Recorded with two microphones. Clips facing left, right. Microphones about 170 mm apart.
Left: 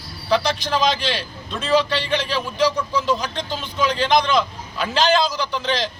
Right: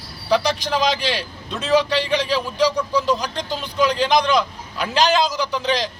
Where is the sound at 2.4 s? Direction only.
Centre (ahead or behind).